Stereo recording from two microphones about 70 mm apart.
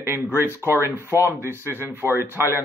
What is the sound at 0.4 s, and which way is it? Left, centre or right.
A man's voice, right.